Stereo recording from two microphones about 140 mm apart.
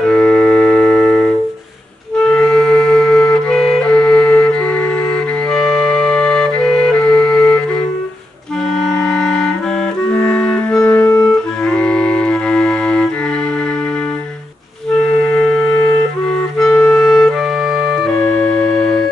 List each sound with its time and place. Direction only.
0.0 s organ: 5° left (ahead or behind)
2.3 s music: 5° left (ahead or behind)
8.8 s music: 5° left (ahead or behind)
16.6 s clarinet: 15° left (ahead or behind)
17.0 s music: centre (ahead or behind)
18.2 s organ: 15° left (ahead or behind)